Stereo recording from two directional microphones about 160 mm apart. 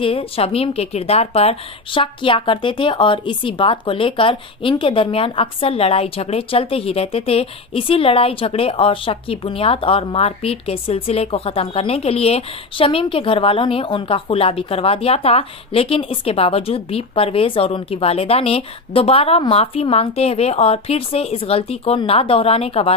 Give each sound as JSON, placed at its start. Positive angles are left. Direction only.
{"t": 0.0, "sound": "a woman's voice", "side_deg": 35}